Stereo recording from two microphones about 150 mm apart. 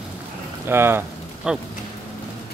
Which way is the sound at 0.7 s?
15° right (ahead or behind).